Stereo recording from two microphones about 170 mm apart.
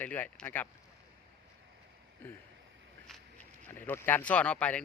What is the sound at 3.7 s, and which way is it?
Speech, 15° left (ahead or behind).